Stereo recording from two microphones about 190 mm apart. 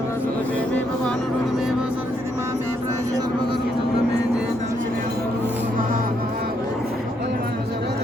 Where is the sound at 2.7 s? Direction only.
20° right (ahead or behind).